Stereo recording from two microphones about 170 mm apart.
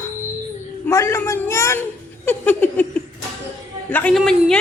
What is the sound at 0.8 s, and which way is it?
A woman's voice, 15° left (ahead or behind).